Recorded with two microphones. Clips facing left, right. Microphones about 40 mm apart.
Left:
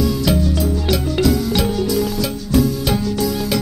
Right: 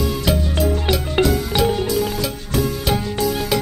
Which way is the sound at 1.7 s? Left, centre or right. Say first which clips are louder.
Left 1 dB; right.